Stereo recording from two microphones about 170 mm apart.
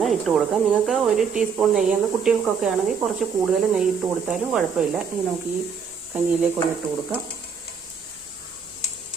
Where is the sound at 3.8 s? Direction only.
Centre (ahead or behind).